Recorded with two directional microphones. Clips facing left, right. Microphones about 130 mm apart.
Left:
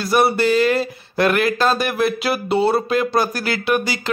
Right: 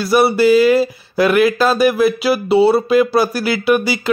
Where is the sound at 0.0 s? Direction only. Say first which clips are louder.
Right 4 dB; 5° right (ahead or behind).